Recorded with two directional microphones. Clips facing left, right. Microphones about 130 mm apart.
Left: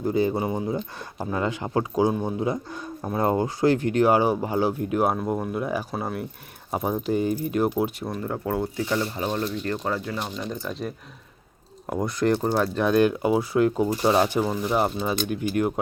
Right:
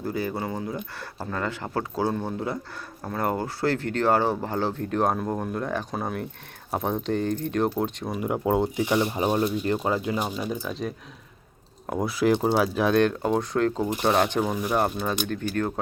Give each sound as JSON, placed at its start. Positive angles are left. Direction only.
{"t": 0.0, "sound": "speech", "side_deg": 20}
{"t": 8.1, "sound": "speech", "side_deg": -15}